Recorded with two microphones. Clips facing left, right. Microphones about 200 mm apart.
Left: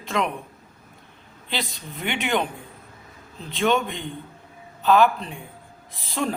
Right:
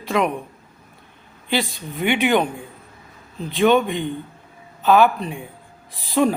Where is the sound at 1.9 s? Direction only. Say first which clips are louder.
Right 9 dB; 15° right (ahead or behind).